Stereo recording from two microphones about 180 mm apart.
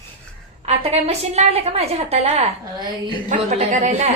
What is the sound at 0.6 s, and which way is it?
A woman's voice, 35° right (ahead or behind).